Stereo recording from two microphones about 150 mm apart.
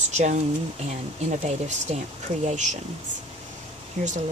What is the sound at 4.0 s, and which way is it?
Speech, 50° right (ahead or behind).